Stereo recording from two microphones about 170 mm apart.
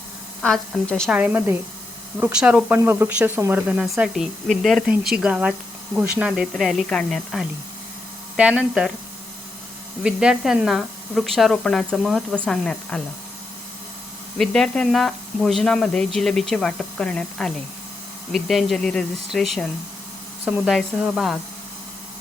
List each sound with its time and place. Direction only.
0.4 s speech: 5° left (ahead or behind)
1.1 s speech: 10° right (ahead or behind)
10.0 s speech: 5° right (ahead or behind)
14.3 s speech: 5° left (ahead or behind)